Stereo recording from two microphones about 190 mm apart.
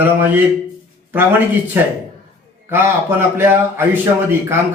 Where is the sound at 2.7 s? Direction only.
10° right (ahead or behind).